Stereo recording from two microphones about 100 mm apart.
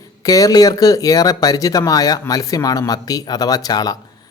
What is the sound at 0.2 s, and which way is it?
Speech, 35° left (ahead or behind).